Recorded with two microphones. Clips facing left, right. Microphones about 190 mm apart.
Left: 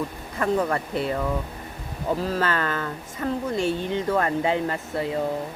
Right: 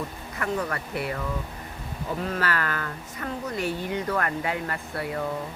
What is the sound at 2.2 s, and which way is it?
Speech, 25° left (ahead or behind).